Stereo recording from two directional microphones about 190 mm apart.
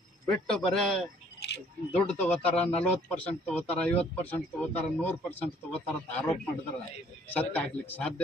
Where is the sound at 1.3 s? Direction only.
60° left (ahead or behind).